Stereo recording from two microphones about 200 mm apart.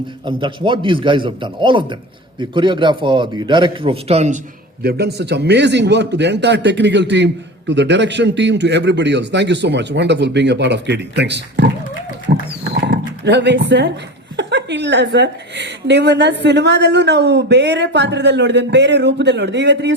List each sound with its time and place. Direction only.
0.3 s a man's voice: 25° right (ahead or behind)
4.8 s a woman's voice: 55° right (ahead or behind)
12.3 s wild animals: 50° right (ahead or behind)
12.7 s dog: 60° right (ahead or behind)
14.3 s a woman's voice: 60° right (ahead or behind)